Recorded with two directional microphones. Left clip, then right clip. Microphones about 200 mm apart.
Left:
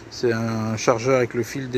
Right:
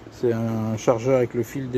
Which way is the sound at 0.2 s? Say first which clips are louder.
Left 1 dB; 15° right (ahead or behind).